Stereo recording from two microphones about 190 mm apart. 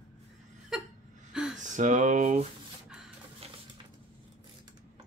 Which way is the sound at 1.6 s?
40° right (ahead or behind).